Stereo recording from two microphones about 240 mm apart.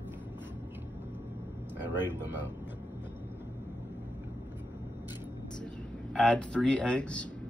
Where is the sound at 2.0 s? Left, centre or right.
Centre.